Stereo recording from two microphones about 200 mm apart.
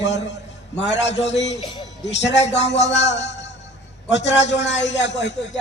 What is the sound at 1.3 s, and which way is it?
A man's voice, 65° left (ahead or behind).